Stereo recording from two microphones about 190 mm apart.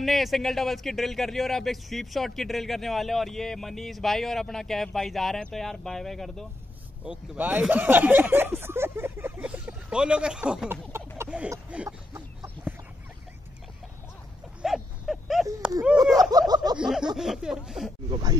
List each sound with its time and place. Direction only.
0.0 s speech: centre (ahead or behind)
7.1 s speech: 10° right (ahead or behind)
11.1 s a sound: 5° right (ahead or behind)
14.6 s a sound: centre (ahead or behind)
16.0 s speech: 20° right (ahead or behind)
16.7 s speech: 5° right (ahead or behind)